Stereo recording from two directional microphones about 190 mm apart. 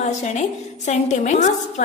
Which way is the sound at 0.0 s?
40° left (ahead or behind).